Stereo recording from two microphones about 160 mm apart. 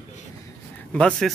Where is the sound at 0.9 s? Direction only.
5° left (ahead or behind).